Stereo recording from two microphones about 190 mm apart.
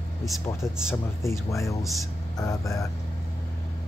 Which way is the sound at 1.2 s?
15° left (ahead or behind).